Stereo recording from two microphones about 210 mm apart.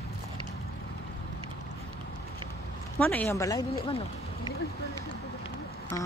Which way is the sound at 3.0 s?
5° left (ahead or behind).